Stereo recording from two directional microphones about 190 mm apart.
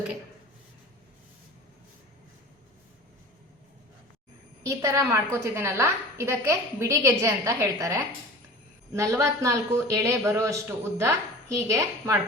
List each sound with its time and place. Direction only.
4.6 s a woman's voice: 15° right (ahead or behind)